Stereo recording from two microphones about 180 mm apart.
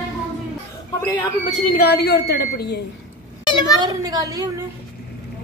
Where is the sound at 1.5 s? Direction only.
55° left (ahead or behind).